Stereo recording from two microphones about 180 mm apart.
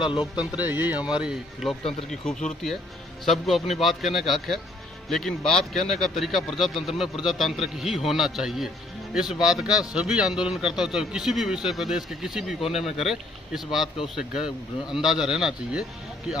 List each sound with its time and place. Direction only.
0.0 s speech: 25° left (ahead or behind)
0.4 s speech: 10° right (ahead or behind)
3.3 s speech: centre (ahead or behind)